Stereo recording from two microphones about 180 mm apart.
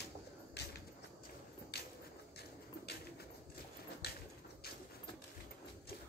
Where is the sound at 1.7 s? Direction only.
60° left (ahead or behind).